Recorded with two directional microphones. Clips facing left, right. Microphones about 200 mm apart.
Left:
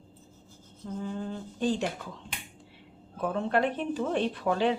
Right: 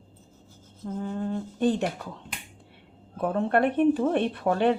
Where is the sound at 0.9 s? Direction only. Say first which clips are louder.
Right 4 dB; 45° right (ahead or behind).